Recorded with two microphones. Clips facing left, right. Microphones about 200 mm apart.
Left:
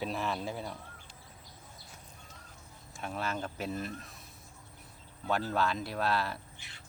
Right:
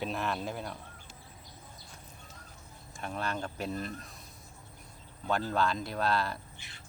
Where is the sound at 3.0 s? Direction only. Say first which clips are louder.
Even; centre (ahead or behind).